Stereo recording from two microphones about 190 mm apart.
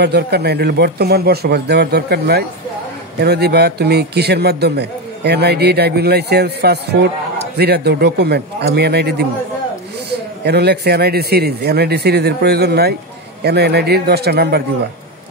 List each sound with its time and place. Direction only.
0.0 s a man's voice: 60° right (ahead or behind)
10.4 s a man's voice: 60° right (ahead or behind)